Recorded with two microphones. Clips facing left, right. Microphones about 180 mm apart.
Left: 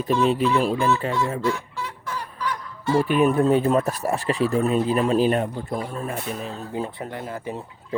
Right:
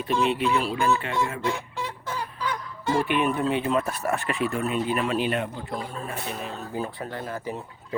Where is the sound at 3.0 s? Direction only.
40° left (ahead or behind).